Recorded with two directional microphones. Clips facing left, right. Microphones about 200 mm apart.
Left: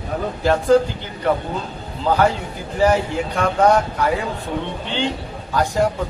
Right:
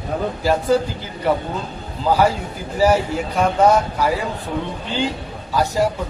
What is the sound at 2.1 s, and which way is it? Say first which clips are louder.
A man's voice: right 1 dB; 10° right (ahead or behind).